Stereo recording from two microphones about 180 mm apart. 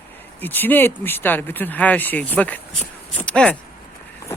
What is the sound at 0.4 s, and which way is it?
Speech, 10° left (ahead or behind).